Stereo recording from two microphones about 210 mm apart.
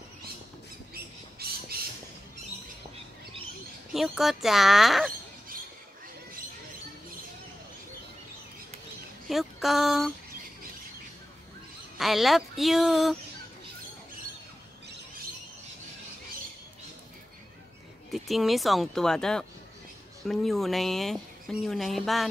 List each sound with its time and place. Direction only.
0.9 s a sound: 45° right (ahead or behind)
3.9 s speech: centre (ahead or behind)
9.3 s speech: centre (ahead or behind)
12.0 s speech: centre (ahead or behind)
18.1 s speech: centre (ahead or behind)